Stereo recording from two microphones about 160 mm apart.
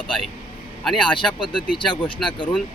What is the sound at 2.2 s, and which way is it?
Speech, 30° left (ahead or behind).